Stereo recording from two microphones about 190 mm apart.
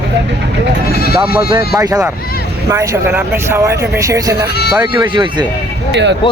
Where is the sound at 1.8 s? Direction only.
20° right (ahead or behind).